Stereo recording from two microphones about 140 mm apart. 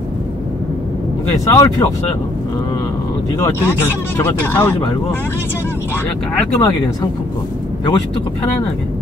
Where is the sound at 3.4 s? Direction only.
15° left (ahead or behind).